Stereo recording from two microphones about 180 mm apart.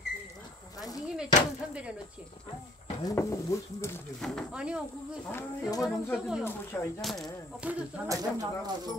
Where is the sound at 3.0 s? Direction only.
20° left (ahead or behind).